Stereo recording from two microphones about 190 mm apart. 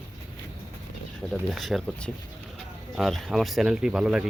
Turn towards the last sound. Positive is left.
turn(degrees=-5)  # may be behind; listen again after turning